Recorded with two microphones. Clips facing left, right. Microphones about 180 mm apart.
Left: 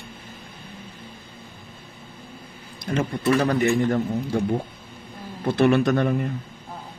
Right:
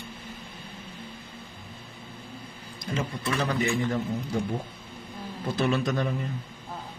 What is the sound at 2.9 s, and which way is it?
A man's voice, 60° left (ahead or behind).